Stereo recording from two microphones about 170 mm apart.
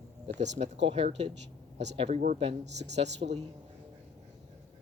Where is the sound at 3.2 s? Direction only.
55° right (ahead or behind).